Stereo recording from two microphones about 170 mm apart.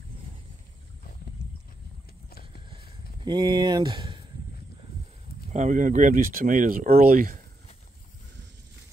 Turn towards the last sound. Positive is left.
turn(degrees=-55)  # may be behind; listen again after turning